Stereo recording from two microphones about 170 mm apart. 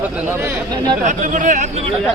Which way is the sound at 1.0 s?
45° right (ahead or behind).